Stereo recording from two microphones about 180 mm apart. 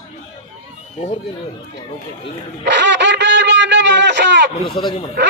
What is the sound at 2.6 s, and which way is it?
A man's voice, 75° right (ahead or behind).